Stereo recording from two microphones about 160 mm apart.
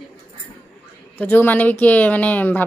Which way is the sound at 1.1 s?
10° left (ahead or behind).